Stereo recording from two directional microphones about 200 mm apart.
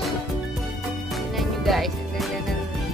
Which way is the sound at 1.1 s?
Centre (ahead or behind).